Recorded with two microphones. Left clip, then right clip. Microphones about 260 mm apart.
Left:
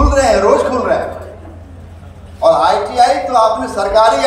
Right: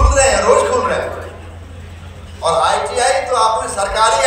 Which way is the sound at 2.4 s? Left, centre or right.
Left.